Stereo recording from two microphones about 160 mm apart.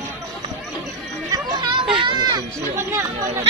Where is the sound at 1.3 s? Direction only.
30° right (ahead or behind).